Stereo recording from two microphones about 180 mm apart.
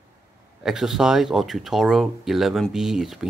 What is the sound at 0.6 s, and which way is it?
Speech, centre (ahead or behind).